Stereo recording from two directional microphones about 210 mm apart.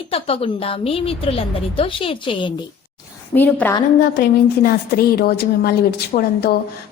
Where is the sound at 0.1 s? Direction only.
25° left (ahead or behind).